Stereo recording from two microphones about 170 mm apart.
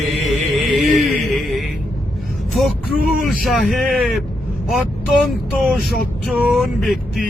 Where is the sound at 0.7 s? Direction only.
Centre (ahead or behind).